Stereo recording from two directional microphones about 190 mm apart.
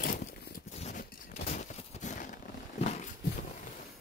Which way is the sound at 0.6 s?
35° left (ahead or behind).